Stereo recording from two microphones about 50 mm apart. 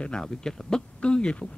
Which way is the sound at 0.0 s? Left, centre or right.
Centre.